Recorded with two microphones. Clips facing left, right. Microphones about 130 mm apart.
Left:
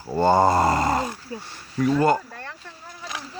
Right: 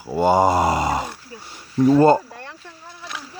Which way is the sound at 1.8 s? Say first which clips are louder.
Right 6 dB; 30° right (ahead or behind).